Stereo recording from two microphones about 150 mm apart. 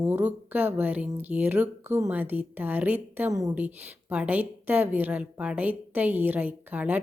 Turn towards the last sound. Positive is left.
turn(degrees=-10)  # may be behind; listen again after turning